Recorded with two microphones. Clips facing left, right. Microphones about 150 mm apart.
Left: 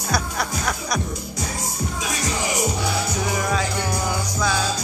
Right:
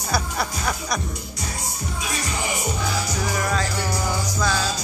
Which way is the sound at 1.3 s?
90° left.